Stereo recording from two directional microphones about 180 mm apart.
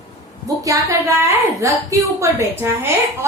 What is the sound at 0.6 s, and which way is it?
A woman's voice, 15° right (ahead or behind).